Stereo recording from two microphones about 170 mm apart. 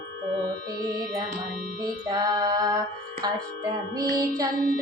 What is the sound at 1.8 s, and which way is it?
Music, 25° right (ahead or behind).